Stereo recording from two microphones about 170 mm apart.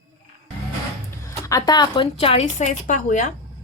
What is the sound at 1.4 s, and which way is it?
Speech, 20° left (ahead or behind).